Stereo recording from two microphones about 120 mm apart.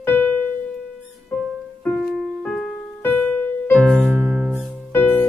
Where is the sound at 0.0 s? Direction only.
15° left (ahead or behind).